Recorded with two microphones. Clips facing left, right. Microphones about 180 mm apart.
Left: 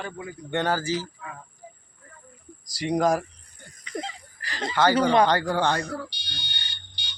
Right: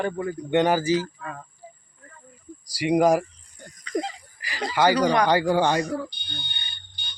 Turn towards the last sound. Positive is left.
turn(degrees=75)  # may be behind; listen again after turning